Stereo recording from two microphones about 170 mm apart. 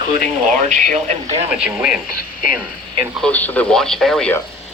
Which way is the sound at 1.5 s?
5° right (ahead or behind).